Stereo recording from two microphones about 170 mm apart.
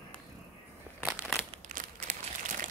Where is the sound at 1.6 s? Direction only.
50° right (ahead or behind).